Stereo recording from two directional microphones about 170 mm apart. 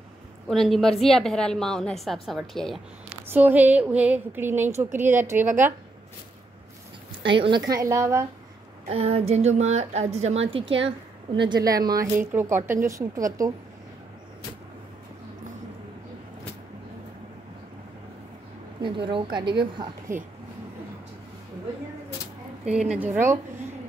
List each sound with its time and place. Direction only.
0.5 s a woman's voice: centre (ahead or behind)
3.3 s a woman's voice: 10° right (ahead or behind)
7.2 s a woman's voice: 30° right (ahead or behind)
8.8 s a woman's voice: 35° right (ahead or behind); by 13.5 s 20° right (ahead or behind)
18.8 s a woman's voice: 30° right (ahead or behind)
22.7 s a woman's voice: 5° right (ahead or behind)